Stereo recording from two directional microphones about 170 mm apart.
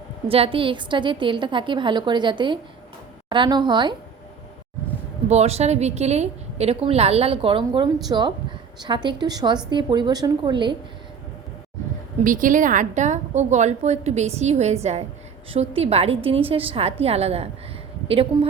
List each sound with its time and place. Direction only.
0.3 s a woman's voice: 35° right (ahead or behind)
5.3 s a woman's voice: 40° right (ahead or behind)
12.2 s a woman's voice: 50° right (ahead or behind)
18.3 s a woman's voice: 20° right (ahead or behind)